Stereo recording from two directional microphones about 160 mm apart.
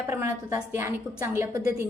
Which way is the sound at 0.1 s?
15° right (ahead or behind).